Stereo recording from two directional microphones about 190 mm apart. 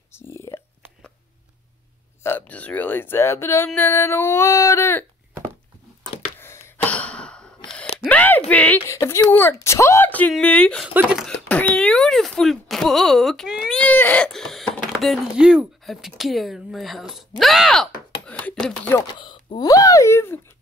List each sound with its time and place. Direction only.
0.1 s a sound: 15° left (ahead or behind)
2.2 s speech: 10° left (ahead or behind)
6.4 s a sound: 15° left (ahead or behind)
8.1 s speech: 10° left (ahead or behind)
10.9 s speech: 10° right (ahead or behind)
11.4 s speech: 5° left (ahead or behind)
18.9 s speech: 25° left (ahead or behind)